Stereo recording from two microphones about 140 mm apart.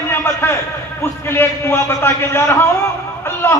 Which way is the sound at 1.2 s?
15° left (ahead or behind).